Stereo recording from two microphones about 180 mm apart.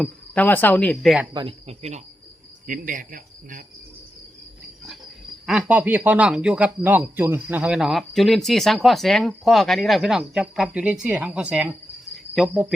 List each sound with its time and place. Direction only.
0.0 s speech: 10° left (ahead or behind)
1.3 s speech: 30° right (ahead or behind)
2.6 s speech: 45° right (ahead or behind)
5.5 s speech: 5° right (ahead or behind)